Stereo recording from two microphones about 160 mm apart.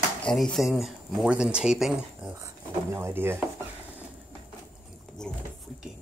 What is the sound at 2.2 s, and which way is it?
Speech, 20° right (ahead or behind).